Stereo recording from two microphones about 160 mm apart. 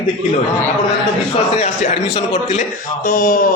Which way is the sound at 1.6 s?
45° left (ahead or behind).